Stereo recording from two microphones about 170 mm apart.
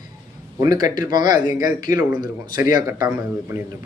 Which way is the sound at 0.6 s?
20° right (ahead or behind).